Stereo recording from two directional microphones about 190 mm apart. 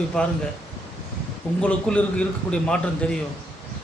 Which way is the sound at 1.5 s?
5° left (ahead or behind).